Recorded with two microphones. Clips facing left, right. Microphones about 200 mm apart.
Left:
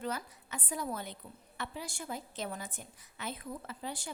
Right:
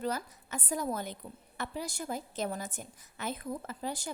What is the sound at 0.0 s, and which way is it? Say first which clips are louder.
A woman's voice: right 4 dB; 40° right (ahead or behind).